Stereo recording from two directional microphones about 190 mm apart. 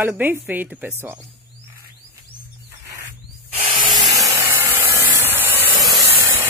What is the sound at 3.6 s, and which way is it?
Spray, 25° right (ahead or behind).